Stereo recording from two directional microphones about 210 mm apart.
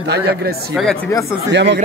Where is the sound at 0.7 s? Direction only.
Centre (ahead or behind).